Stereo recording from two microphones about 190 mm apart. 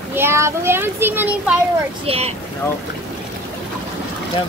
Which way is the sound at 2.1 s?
35° right (ahead or behind).